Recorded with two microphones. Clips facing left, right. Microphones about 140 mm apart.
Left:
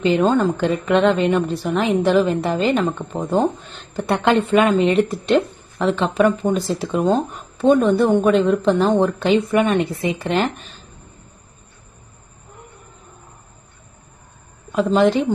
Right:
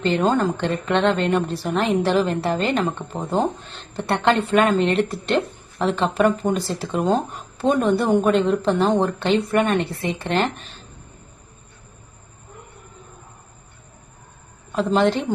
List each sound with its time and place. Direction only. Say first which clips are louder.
0.0 s a woman's voice: left 3 dB; centre (ahead or behind)
14.8 s a woman's voice: left 3 dB; centre (ahead or behind)